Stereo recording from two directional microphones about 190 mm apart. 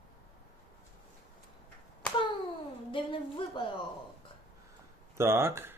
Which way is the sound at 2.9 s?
25° left (ahead or behind).